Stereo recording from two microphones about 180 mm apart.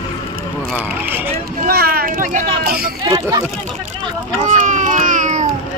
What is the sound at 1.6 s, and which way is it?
Speech, 60° right (ahead or behind).